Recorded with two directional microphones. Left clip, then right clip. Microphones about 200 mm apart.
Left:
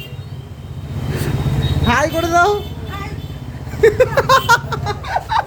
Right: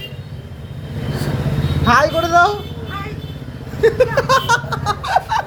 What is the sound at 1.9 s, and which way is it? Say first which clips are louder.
Speech: right 3 dB; 25° left (ahead or behind).